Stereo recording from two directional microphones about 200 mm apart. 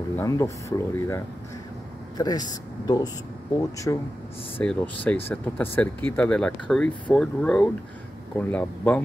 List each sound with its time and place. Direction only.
0.1 s speech: 15° left (ahead or behind)